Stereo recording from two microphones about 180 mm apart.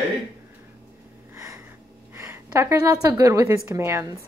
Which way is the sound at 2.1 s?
15° right (ahead or behind).